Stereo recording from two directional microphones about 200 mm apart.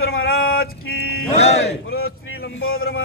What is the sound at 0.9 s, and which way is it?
Music, 50° left (ahead or behind).